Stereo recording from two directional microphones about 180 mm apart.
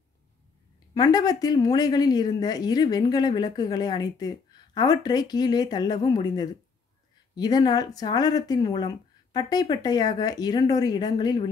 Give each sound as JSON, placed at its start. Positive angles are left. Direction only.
{"t": 0.9, "sound": "speech", "side_deg": 20}